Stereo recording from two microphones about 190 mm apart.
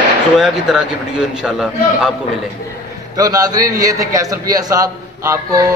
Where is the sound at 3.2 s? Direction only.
20° right (ahead or behind).